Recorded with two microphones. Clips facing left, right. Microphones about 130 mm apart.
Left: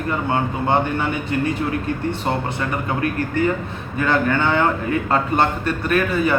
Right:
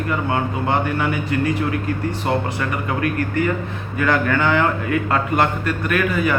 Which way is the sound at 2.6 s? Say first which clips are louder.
Even; 25° left (ahead or behind).